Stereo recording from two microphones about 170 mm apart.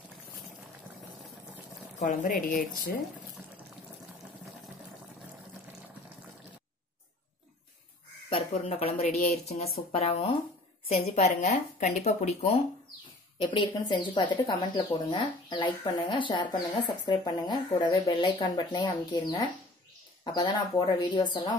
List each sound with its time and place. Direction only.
2.0 s speech: 50° left (ahead or behind)
8.3 s speech: 35° left (ahead or behind)
13.4 s speech: 25° left (ahead or behind)